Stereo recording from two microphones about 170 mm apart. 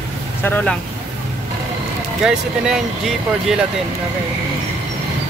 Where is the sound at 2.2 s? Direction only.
5° right (ahead or behind).